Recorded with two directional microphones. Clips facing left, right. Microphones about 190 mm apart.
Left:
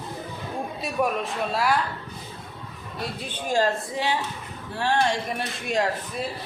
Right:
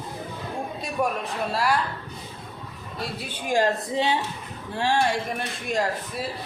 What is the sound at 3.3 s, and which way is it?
Speech, 15° right (ahead or behind).